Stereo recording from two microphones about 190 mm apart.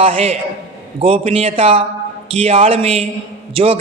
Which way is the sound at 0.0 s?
30° right (ahead or behind).